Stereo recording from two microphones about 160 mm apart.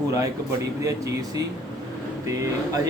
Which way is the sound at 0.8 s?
20° right (ahead or behind).